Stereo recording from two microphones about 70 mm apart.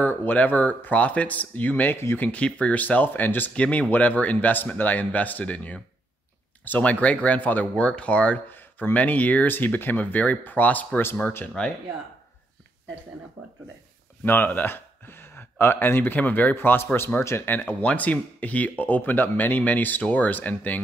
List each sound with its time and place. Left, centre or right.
0.0 s speech: left
3.5 s speech: centre
8.5 s speech: left
14.2 s speech: left
17.5 s speech: left